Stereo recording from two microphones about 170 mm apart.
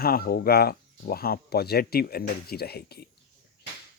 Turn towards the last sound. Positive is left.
turn(degrees=70)  # may be behind; listen again after turning